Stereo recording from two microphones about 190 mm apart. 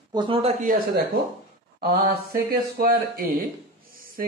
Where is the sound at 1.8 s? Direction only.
55° right (ahead or behind).